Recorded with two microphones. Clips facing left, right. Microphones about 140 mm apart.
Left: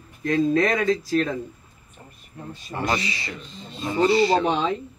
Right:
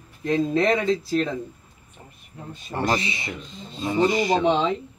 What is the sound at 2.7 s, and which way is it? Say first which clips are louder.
Speech: right 2 dB; 35° right (ahead or behind).